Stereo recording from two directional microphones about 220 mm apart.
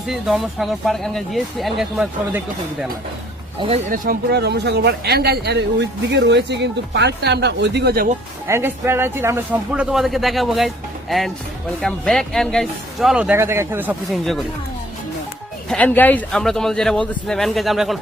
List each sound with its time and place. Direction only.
0.1 s speech: centre (ahead or behind)
3.6 s speech: 25° right (ahead or behind)
3.9 s speech: 40° right (ahead or behind)
8.4 s speech: 10° right (ahead or behind)
11.8 s speech: centre (ahead or behind)
15.7 s speech: 5° left (ahead or behind)